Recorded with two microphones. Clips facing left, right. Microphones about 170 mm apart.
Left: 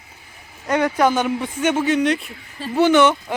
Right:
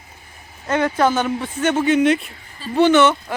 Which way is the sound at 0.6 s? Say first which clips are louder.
Even; 15° left (ahead or behind).